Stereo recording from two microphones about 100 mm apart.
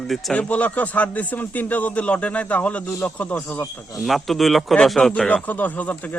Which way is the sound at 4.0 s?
Centre (ahead or behind).